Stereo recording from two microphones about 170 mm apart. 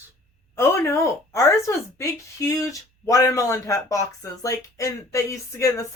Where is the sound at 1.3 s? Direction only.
15° left (ahead or behind).